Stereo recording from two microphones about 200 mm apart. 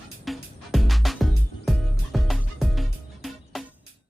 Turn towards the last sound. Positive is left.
turn(degrees=0)  # may be behind; listen again after turning